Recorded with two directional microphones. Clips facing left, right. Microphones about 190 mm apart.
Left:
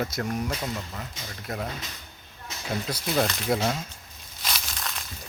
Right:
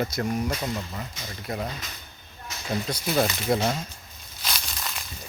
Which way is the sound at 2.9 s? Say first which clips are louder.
Right 1 dB; 5° right (ahead or behind).